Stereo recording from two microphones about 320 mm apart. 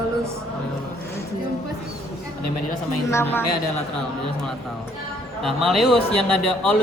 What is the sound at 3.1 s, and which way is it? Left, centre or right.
Speech, centre.